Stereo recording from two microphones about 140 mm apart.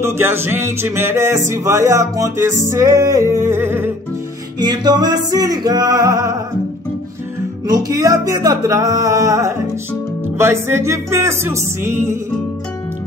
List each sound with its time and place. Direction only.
0.0 s music: 15° right (ahead or behind)
4.6 s music: 30° right (ahead or behind)
7.6 s music: 25° right (ahead or behind)